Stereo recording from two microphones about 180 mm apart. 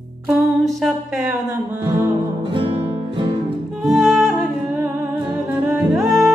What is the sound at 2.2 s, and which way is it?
Music, 30° right (ahead or behind).